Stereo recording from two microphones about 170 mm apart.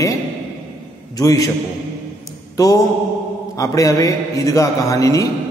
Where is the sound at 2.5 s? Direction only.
20° left (ahead or behind).